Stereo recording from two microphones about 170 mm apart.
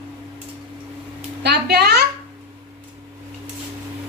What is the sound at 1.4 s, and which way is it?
Speech, 75° right (ahead or behind).